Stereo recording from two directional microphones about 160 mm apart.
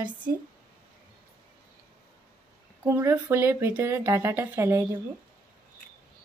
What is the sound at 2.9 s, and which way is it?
Speech, 15° right (ahead or behind).